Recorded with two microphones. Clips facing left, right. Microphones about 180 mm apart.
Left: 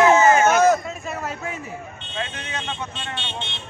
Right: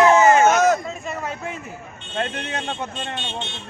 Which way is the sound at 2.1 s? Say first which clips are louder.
Right 5 dB; 55° right (ahead or behind).